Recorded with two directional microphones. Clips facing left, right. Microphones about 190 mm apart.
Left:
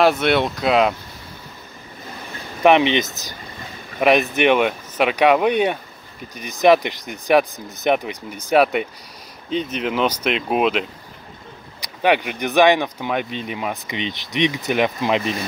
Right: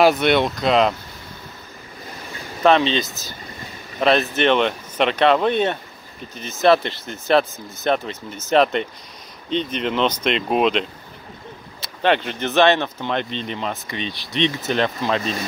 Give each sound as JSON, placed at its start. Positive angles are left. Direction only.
{"t": 0.0, "sound": "speech", "side_deg": 0}
{"t": 2.6, "sound": "speech", "side_deg": 15}